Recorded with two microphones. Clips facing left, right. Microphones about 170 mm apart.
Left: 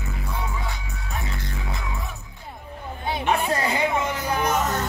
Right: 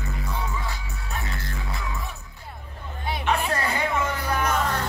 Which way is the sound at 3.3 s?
20° left (ahead or behind).